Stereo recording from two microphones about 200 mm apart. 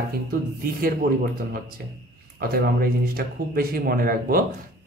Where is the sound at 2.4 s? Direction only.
50° right (ahead or behind).